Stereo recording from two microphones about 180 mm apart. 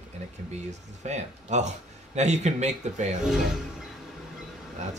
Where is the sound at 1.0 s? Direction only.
40° right (ahead or behind).